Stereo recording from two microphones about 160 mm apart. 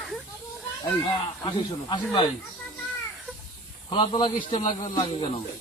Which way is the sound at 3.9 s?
35° left (ahead or behind).